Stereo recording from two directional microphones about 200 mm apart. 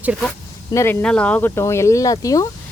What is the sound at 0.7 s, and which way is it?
Speech, 10° left (ahead or behind).